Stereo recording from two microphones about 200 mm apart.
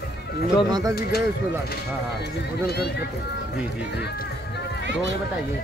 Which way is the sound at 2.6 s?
55° left (ahead or behind).